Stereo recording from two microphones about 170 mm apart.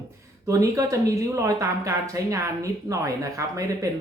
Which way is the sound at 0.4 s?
20° right (ahead or behind).